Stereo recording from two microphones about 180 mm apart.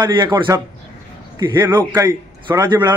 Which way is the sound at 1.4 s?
25° right (ahead or behind).